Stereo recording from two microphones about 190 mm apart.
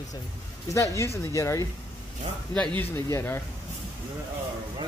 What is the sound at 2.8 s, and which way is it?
Speech, 10° left (ahead or behind).